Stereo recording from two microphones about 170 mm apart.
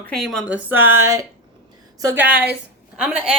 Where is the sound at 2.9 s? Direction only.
5° right (ahead or behind).